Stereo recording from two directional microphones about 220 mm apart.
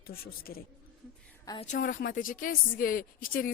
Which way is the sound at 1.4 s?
20° left (ahead or behind).